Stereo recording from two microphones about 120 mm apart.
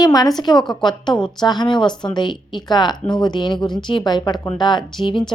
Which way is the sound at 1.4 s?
40° left (ahead or behind).